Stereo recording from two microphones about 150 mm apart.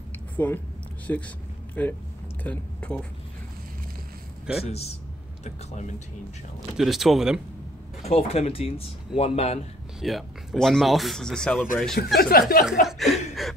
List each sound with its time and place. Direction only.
0.4 s speech: 15° left (ahead or behind)
4.6 s speech: 45° left (ahead or behind)
6.8 s speech: centre (ahead or behind)
8.0 s speech: 45° left (ahead or behind)
10.0 s speech: centre (ahead or behind)
12.2 s speech: 85° left
12.8 s speech: centre (ahead or behind)